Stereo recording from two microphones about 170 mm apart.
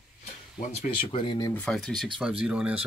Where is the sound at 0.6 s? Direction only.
40° left (ahead or behind).